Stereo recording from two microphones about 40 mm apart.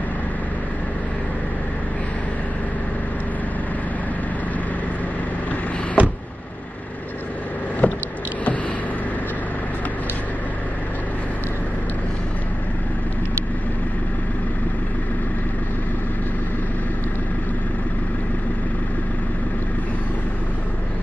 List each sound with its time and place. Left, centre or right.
6.0 s power windows: right
7.8 s vehicle: left